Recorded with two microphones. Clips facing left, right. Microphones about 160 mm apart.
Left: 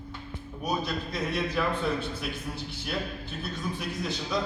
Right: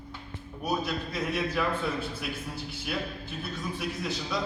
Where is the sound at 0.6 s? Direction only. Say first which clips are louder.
Even; 5° right (ahead or behind).